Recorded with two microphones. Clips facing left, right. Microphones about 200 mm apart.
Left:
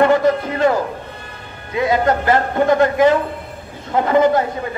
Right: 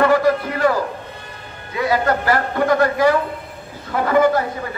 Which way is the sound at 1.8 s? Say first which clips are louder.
Left 2 dB; 20° left (ahead or behind).